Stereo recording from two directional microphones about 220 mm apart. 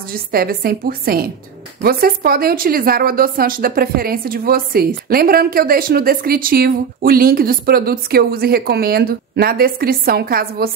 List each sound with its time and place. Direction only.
0.1 s a woman's voice: 45° right (ahead or behind)